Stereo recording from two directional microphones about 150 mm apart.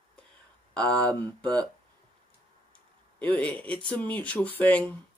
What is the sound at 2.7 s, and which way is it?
Tick, 10° left (ahead or behind).